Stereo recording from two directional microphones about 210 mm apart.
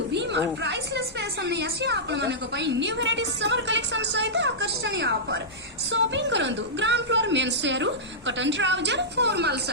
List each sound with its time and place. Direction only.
0.1 s a woman's voice: 55° right (ahead or behind)